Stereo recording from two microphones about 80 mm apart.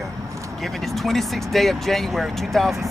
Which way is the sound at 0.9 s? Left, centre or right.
Centre.